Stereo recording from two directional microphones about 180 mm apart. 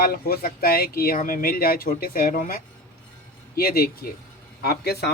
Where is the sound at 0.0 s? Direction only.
55° left (ahead or behind).